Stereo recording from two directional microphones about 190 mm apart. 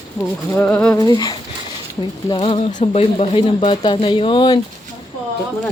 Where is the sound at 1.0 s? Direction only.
20° left (ahead or behind).